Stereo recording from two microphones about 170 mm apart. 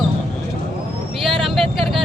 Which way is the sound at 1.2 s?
Centre (ahead or behind).